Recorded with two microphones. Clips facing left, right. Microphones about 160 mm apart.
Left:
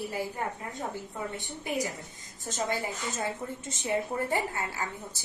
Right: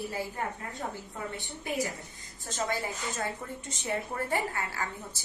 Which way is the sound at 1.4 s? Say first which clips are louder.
Even; 15° left (ahead or behind).